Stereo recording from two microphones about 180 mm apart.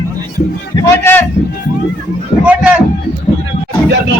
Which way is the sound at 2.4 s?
5° right (ahead or behind).